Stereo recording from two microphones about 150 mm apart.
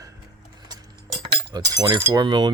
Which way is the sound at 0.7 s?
25° right (ahead or behind).